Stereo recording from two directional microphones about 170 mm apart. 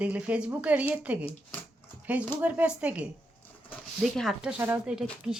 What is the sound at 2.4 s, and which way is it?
Speech, 10° right (ahead or behind).